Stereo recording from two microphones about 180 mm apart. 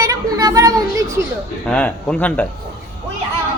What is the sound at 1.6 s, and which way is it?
Speech, 5° left (ahead or behind).